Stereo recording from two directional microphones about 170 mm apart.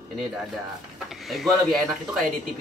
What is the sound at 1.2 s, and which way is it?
Speech, centre (ahead or behind).